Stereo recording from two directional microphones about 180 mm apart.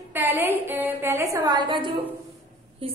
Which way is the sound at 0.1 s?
10° right (ahead or behind).